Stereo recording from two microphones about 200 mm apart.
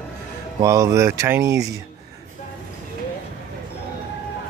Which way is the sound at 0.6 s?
15° right (ahead or behind).